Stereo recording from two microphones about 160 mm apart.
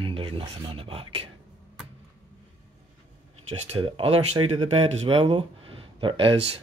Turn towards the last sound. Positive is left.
turn(degrees=-35)  # may be behind; listen again after turning